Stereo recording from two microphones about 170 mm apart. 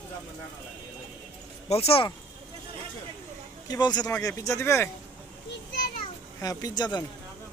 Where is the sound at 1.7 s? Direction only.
35° left (ahead or behind).